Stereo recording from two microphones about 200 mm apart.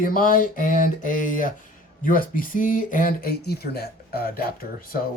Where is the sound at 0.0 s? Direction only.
45° left (ahead or behind).